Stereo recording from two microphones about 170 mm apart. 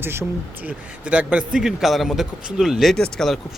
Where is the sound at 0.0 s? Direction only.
15° right (ahead or behind).